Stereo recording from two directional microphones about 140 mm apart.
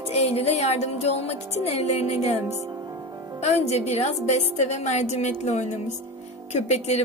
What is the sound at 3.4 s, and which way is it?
A woman's voice, 50° left (ahead or behind).